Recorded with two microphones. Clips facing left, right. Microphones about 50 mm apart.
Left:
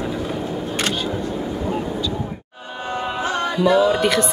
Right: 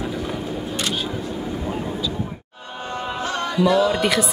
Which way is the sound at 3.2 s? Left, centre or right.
Centre.